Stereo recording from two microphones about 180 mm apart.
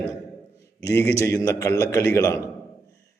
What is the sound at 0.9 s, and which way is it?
A man's voice, 15° left (ahead or behind).